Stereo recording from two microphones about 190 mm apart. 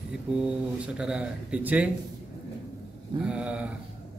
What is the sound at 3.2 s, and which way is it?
Speech, 5° right (ahead or behind).